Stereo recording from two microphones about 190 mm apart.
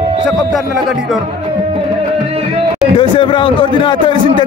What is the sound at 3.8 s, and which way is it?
Speech, 25° left (ahead or behind).